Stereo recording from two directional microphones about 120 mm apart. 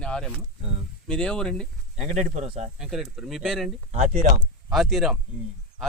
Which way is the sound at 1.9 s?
70° right (ahead or behind).